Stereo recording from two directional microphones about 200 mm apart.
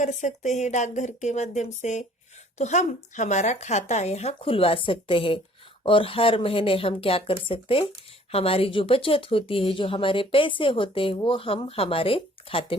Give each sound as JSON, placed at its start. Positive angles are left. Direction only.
{"t": 0.0, "sound": "speech", "side_deg": 35}